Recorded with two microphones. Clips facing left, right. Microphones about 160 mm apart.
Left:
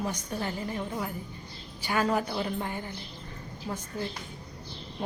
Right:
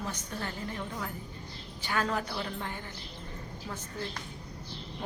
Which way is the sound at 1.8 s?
10° left (ahead or behind).